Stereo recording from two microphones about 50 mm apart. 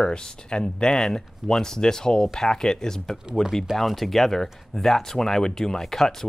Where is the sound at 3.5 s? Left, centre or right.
Centre.